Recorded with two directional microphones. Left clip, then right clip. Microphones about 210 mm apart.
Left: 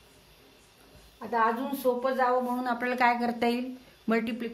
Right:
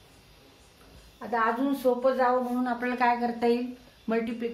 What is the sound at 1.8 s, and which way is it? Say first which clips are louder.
Speech: right 2 dB; 40° left (ahead or behind).